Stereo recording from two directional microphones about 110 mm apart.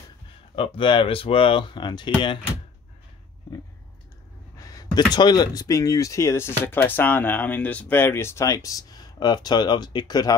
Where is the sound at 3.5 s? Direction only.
35° left (ahead or behind).